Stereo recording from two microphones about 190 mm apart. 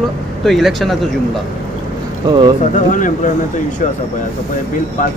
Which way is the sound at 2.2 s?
20° right (ahead or behind).